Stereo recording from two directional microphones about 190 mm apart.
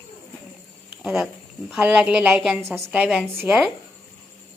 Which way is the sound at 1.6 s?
5° right (ahead or behind).